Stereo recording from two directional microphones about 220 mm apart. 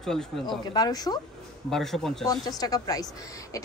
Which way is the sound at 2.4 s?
15° left (ahead or behind).